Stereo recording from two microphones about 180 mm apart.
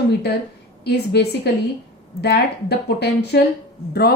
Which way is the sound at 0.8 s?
65° left (ahead or behind).